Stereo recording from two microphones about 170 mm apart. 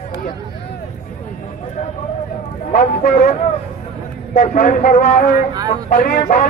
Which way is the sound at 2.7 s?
50° left (ahead or behind).